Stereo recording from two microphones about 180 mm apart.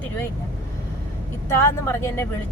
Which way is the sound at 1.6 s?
15° left (ahead or behind).